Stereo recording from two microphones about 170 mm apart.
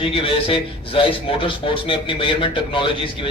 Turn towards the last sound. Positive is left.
turn(degrees=30)  # may be behind; listen again after turning